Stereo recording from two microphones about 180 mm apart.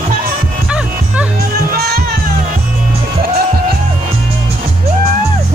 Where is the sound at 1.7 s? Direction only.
60° right (ahead or behind).